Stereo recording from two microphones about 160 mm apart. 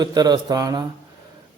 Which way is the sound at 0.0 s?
25° right (ahead or behind).